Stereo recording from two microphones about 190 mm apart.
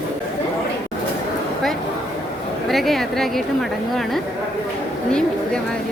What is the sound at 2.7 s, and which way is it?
A woman's voice, centre (ahead or behind).